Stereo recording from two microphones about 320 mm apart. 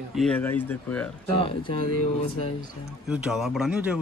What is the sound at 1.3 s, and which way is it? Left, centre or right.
Speech, centre.